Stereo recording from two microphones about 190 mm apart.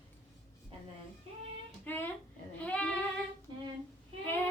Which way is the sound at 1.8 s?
10° left (ahead or behind).